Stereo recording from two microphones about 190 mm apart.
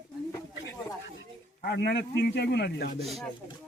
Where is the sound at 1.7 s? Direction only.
60° left (ahead or behind).